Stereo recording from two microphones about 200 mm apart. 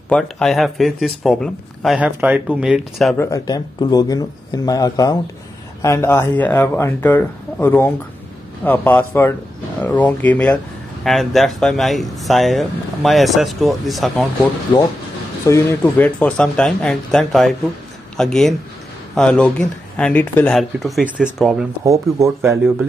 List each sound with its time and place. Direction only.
0.1 s speech: centre (ahead or behind)
3.2 s speech: 15° left (ahead or behind); by 14.5 s centre (ahead or behind)
15.4 s speech: 10° left (ahead or behind)
21.8 s speech: 15° right (ahead or behind)